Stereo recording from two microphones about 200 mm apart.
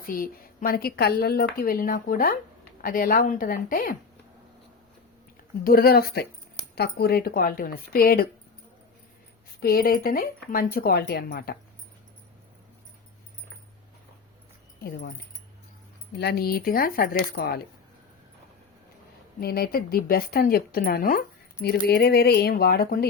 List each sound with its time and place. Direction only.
0.0 s speech: 45° left (ahead or behind)
5.6 s speech: 50° left (ahead or behind)
9.6 s speech: 50° left (ahead or behind)
16.1 s speech: 55° left (ahead or behind)
19.4 s speech: 50° left (ahead or behind)